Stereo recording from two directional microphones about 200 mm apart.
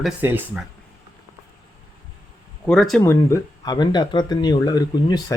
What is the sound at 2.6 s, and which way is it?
Speech, centre (ahead or behind).